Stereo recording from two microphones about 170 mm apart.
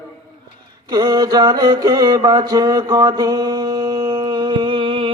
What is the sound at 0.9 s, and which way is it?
Mantra, 25° right (ahead or behind).